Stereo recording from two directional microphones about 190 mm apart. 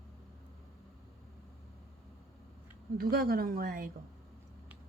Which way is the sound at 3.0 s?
50° right (ahead or behind).